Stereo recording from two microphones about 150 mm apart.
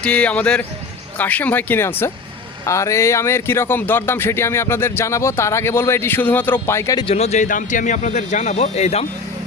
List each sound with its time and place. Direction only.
0.0 s speech: 10° left (ahead or behind)
7.0 s speech: 45° left (ahead or behind)
7.4 s speech: 60° left (ahead or behind); by 9.0 s 45° left (ahead or behind)